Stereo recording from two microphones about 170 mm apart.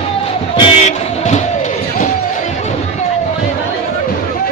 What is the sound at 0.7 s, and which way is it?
Music, 40° left (ahead or behind).